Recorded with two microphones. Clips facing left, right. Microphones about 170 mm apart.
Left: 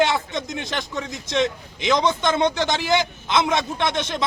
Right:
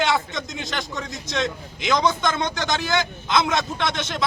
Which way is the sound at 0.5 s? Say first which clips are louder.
Left 2 dB; 20° left (ahead or behind).